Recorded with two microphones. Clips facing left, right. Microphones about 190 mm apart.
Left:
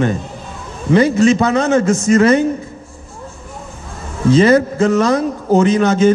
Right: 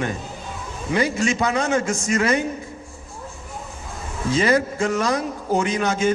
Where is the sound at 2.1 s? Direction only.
35° left (ahead or behind).